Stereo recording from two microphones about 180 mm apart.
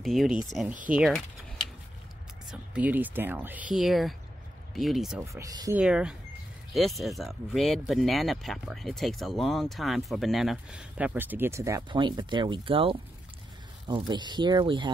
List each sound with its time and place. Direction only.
0.0 s speech: centre (ahead or behind)
2.5 s speech: 5° right (ahead or behind)
5.2 s speech: 20° right (ahead or behind)
5.8 s speech: 5° right (ahead or behind); by 14.9 s 25° right (ahead or behind)